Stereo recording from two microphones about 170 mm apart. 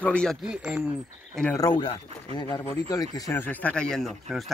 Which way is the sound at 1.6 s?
25° left (ahead or behind).